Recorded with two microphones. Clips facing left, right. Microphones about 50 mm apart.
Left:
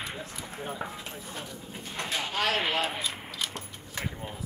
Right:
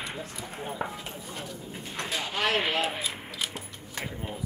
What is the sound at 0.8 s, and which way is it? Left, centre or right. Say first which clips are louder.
Speech: right 6 dB; centre.